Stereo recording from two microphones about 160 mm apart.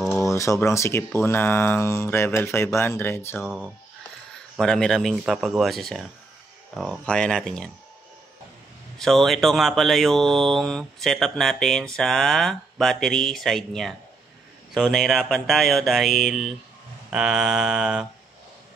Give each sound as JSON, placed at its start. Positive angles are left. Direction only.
{"t": 0.2, "sound": "speech", "side_deg": 20}
{"t": 3.4, "sound": "speech", "side_deg": -5}
{"t": 8.9, "sound": "speech", "side_deg": 0}